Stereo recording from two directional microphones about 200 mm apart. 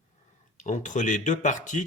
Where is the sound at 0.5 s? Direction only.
35° left (ahead or behind).